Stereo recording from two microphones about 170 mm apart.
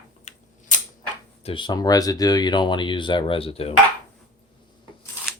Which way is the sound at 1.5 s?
30° left (ahead or behind).